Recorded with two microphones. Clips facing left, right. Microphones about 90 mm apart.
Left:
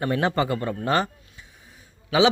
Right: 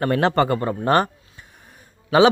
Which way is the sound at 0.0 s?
70° right (ahead or behind).